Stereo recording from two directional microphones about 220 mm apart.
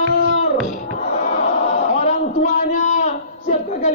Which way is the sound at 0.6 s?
35° left (ahead or behind).